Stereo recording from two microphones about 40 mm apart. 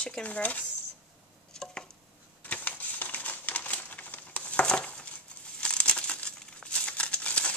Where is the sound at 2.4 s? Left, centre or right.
Left.